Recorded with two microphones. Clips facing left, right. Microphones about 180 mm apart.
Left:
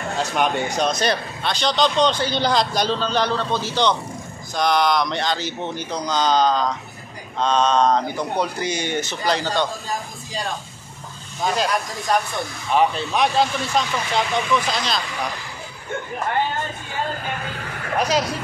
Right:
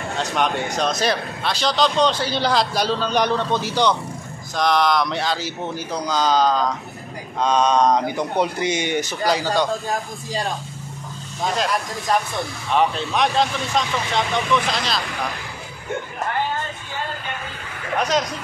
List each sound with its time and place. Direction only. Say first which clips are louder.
0.2 s a man's voice: left 1 dB; centre (ahead or behind)
4.6 s a man's voice: even; centre (ahead or behind)
11.4 s a man's voice: left 1 dB; centre (ahead or behind)
17.9 s a man's voice: even; centre (ahead or behind)